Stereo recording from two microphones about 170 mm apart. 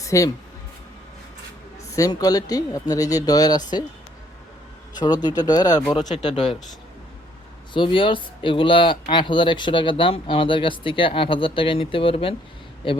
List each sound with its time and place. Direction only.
0.0 s speech: 20° left (ahead or behind)
2.0 s speech: 20° left (ahead or behind)
4.9 s speech: 25° left (ahead or behind)
7.7 s speech: 30° left (ahead or behind)